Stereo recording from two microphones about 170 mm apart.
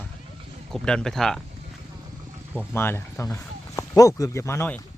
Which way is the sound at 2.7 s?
15° left (ahead or behind).